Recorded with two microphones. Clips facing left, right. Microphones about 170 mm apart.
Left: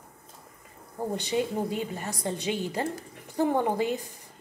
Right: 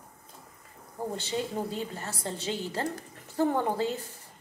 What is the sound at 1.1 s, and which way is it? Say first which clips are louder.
A woman's voice: left 5 dB; 15° left (ahead or behind).